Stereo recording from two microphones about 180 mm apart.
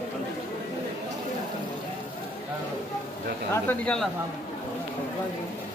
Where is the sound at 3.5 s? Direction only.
10° left (ahead or behind).